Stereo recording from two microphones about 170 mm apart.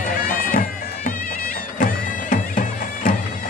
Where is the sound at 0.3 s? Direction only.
55° left (ahead or behind).